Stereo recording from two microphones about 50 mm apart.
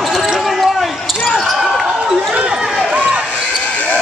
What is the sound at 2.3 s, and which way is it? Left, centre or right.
Run, centre.